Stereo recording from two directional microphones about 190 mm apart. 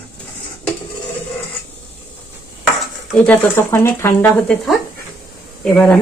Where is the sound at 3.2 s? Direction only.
10° left (ahead or behind).